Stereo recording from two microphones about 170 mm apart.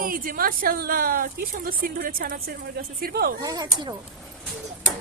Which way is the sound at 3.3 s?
25° right (ahead or behind).